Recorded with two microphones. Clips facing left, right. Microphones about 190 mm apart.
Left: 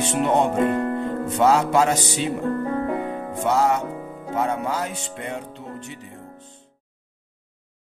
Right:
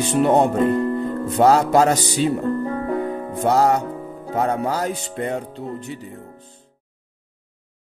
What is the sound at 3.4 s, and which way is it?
Speech, 40° right (ahead or behind).